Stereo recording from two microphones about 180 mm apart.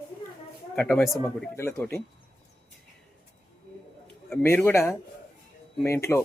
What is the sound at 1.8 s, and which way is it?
Speech, 15° left (ahead or behind).